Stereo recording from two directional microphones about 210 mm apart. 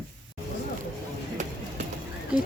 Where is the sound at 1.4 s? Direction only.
35° right (ahead or behind).